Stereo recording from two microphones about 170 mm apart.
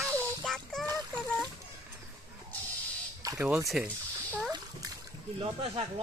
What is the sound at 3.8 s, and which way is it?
Speech, 5° right (ahead or behind).